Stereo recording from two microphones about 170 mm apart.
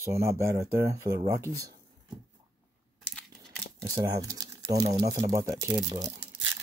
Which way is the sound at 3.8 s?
20° right (ahead or behind).